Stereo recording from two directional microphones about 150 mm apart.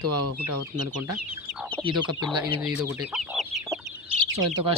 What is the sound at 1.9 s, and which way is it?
Speech, 30° right (ahead or behind).